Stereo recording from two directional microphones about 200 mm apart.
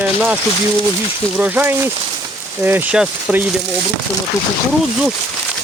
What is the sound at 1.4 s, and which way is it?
Speech, 10° right (ahead or behind).